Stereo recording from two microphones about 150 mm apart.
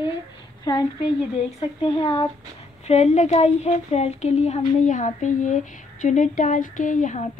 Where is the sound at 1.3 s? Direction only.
40° left (ahead or behind).